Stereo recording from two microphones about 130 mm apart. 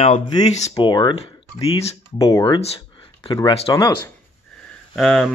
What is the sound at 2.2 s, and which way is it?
Speech, 25° left (ahead or behind).